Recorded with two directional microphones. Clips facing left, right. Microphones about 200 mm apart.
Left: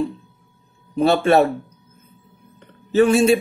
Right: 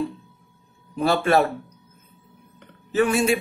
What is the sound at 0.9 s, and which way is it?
Speech, 25° left (ahead or behind).